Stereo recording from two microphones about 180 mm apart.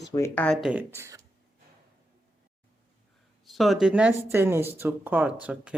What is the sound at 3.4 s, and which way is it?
Speech, centre (ahead or behind).